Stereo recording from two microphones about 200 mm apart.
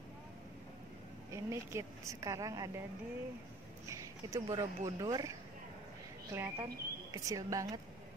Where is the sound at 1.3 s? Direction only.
15° right (ahead or behind).